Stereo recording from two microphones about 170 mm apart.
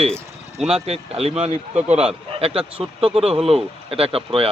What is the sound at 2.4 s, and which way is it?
A man's voice, 35° right (ahead or behind).